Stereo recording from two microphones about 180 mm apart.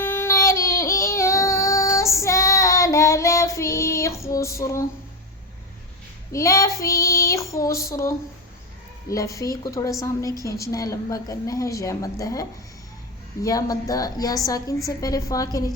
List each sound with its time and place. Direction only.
0.0 s child singing: 15° left (ahead or behind)
6.3 s a woman's voice: 15° left (ahead or behind)